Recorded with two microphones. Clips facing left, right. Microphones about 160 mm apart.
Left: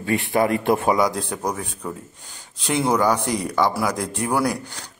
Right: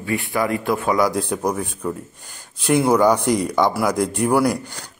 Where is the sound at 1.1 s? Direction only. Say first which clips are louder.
Right 4 dB; 15° right (ahead or behind).